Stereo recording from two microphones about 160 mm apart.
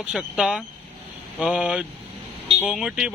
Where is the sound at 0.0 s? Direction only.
5° right (ahead or behind).